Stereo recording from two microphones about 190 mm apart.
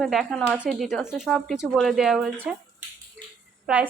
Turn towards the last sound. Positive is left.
turn(degrees=-5)  # may be behind; listen again after turning